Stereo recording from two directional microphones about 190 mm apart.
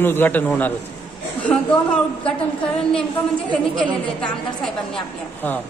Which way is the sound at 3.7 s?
5° left (ahead or behind).